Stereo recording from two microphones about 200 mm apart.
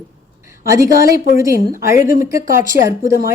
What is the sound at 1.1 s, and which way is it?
Speech, 45° left (ahead or behind).